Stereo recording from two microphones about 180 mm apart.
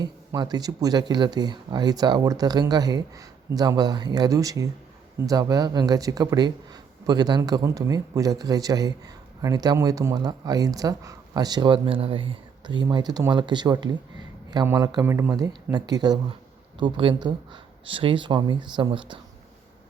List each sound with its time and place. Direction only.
0.0 s speech: 20° right (ahead or behind)